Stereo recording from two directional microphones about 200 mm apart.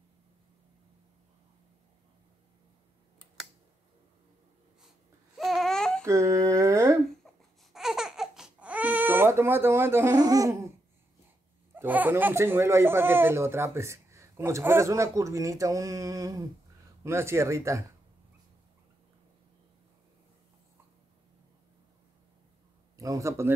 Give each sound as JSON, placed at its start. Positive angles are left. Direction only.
{"t": 5.4, "sound": "baby cry", "side_deg": 0}
{"t": 6.0, "sound": "a sound", "side_deg": -15}
{"t": 7.2, "sound": "baby cry", "side_deg": 0}
{"t": 11.7, "sound": "speech", "side_deg": -10}
{"t": 22.9, "sound": "speech", "side_deg": -15}